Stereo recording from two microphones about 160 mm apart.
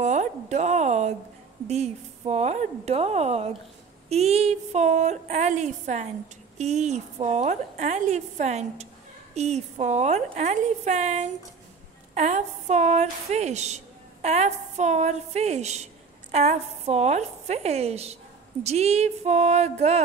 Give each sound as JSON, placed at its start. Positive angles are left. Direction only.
{"t": 0.0, "sound": "a woman's voice", "side_deg": -45}